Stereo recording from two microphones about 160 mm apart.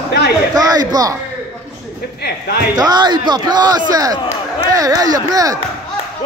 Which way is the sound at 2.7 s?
25° right (ahead or behind).